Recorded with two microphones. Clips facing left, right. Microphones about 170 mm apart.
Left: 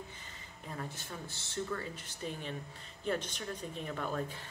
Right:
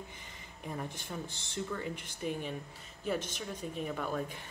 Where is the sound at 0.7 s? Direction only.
15° right (ahead or behind).